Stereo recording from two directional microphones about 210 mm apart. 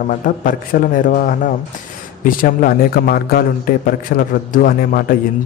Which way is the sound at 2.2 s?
40° left (ahead or behind).